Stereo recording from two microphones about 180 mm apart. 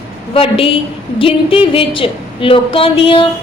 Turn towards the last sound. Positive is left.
turn(degrees=30)  # may be behind; listen again after turning